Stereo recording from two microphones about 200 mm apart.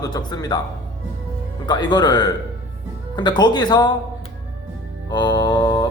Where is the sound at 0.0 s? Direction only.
20° left (ahead or behind).